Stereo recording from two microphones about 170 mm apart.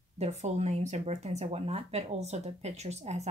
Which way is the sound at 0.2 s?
40° right (ahead or behind).